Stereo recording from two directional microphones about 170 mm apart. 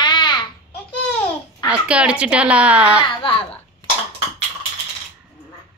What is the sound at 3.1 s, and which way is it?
Speech, 30° left (ahead or behind).